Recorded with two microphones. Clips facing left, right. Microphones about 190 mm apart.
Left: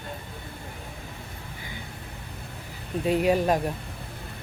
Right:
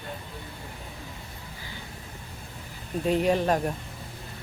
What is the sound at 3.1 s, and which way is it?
Speech, 10° left (ahead or behind).